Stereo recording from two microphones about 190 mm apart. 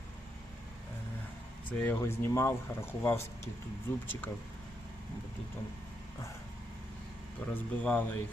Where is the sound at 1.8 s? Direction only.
10° left (ahead or behind).